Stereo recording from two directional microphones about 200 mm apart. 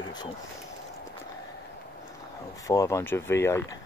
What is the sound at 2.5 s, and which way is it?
Speech, 15° left (ahead or behind).